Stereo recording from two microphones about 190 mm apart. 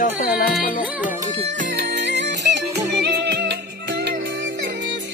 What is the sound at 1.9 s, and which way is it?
Music, 65° right (ahead or behind).